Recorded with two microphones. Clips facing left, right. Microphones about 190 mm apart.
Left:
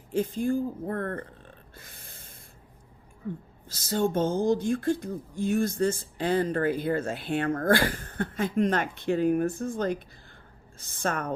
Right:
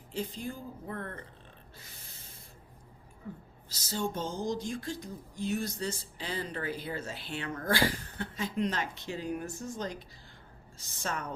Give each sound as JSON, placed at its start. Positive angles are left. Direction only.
{"t": 0.1, "sound": "speech", "side_deg": 50}
{"t": 1.7, "sound": "snort", "side_deg": 55}
{"t": 3.7, "sound": "speech", "side_deg": 55}